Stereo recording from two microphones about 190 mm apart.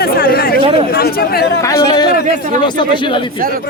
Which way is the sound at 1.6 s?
20° left (ahead or behind).